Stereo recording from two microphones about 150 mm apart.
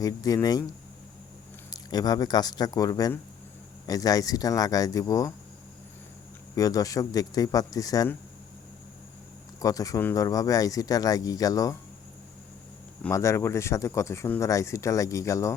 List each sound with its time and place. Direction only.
0.0 s speech: 25° left (ahead or behind)
1.7 s speech: 25° left (ahead or behind)
6.6 s speech: 25° left (ahead or behind)
9.6 s speech: 25° left (ahead or behind)
13.1 s speech: 20° left (ahead or behind)